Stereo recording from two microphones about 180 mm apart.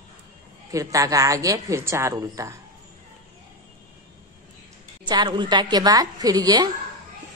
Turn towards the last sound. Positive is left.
turn(degrees=-20)  # may be behind; listen again after turning